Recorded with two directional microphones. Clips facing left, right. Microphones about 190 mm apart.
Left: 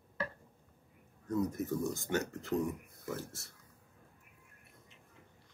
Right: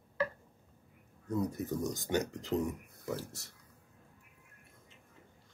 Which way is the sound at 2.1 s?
15° right (ahead or behind).